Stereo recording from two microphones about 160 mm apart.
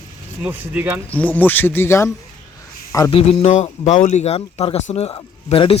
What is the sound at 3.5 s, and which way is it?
Speech, 50° left (ahead or behind).